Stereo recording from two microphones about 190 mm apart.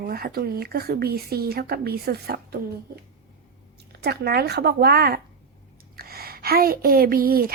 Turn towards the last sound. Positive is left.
turn(degrees=-50)  # may be behind; listen again after turning